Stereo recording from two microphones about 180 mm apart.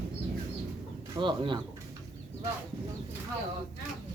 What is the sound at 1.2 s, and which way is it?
Speech, 25° right (ahead or behind).